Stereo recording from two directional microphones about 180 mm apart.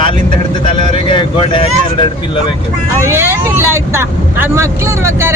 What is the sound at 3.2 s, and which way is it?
Speech, 15° right (ahead or behind).